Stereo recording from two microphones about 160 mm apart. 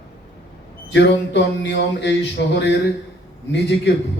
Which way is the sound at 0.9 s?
90° left.